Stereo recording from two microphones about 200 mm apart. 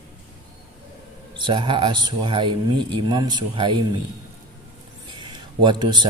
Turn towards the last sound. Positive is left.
turn(degrees=-20)  # may be behind; listen again after turning